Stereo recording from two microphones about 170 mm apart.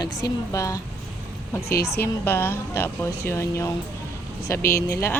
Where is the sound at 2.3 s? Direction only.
15° left (ahead or behind).